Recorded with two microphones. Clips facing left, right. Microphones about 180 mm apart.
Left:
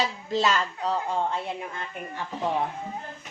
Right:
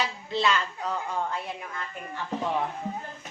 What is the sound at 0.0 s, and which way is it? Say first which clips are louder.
Speech: left 2 dB; 40° left (ahead or behind).